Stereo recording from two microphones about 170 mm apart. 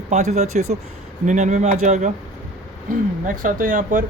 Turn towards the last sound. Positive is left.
turn(degrees=-50)  # may be behind; listen again after turning